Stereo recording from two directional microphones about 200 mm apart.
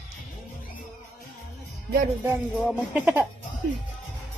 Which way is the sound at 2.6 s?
5° right (ahead or behind).